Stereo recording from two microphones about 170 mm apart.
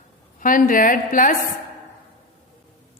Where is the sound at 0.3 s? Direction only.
50° left (ahead or behind).